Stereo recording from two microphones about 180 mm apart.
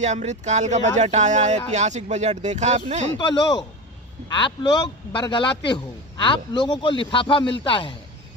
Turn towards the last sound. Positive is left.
turn(degrees=30)  # may be behind; listen again after turning